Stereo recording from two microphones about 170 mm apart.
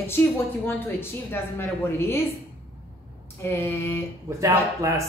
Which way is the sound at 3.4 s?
15° left (ahead or behind).